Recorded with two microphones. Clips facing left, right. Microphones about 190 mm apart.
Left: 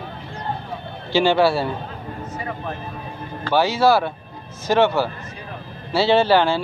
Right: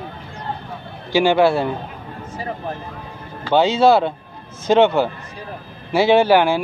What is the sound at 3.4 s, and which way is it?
Speech, 20° right (ahead or behind).